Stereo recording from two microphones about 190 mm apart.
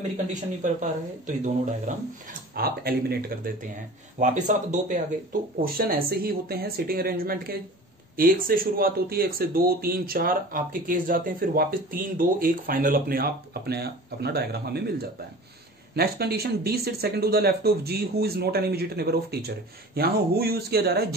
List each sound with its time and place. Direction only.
0.3 s speech: 40° right (ahead or behind)
2.5 s speech: 50° right (ahead or behind)
4.2 s speech: 40° right (ahead or behind)